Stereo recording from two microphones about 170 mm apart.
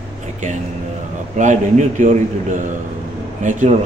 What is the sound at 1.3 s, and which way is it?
A man's voice, 45° right (ahead or behind).